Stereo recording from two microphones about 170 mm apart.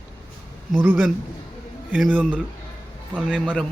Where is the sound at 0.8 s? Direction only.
10° right (ahead or behind).